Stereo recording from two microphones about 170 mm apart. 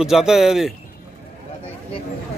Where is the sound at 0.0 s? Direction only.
Centre (ahead or behind).